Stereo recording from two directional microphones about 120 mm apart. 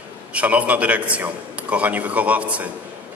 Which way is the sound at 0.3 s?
10° right (ahead or behind).